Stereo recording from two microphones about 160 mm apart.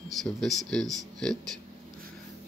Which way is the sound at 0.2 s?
Centre (ahead or behind).